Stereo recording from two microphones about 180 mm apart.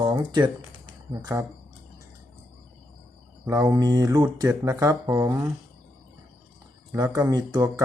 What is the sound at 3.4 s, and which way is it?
Speech, 20° right (ahead or behind).